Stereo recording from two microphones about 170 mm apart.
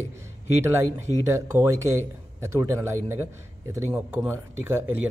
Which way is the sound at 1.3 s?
15° right (ahead or behind).